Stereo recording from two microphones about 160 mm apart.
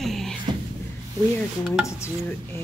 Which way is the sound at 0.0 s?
Centre (ahead or behind).